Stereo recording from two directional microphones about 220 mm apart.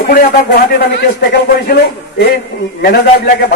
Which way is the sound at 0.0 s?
45° left (ahead or behind).